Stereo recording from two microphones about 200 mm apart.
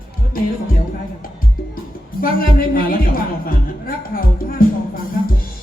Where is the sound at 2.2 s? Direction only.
45° left (ahead or behind).